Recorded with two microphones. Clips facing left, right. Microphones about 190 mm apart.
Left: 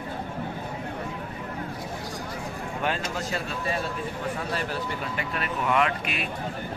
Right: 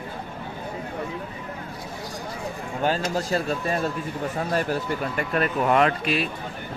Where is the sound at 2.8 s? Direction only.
35° right (ahead or behind).